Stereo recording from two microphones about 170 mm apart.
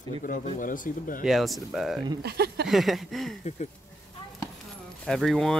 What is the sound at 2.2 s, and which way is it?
Speech, 70° right (ahead or behind).